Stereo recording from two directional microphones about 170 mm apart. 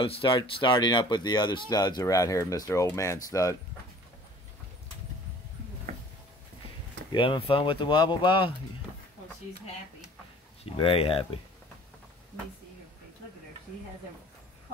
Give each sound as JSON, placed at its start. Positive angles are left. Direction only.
{"t": 0.0, "sound": "speech", "side_deg": 30}
{"t": 7.1, "sound": "speech", "side_deg": 30}
{"t": 10.6, "sound": "speech", "side_deg": 35}